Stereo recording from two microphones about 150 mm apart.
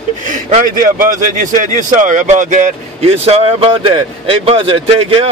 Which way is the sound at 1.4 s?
60° right (ahead or behind).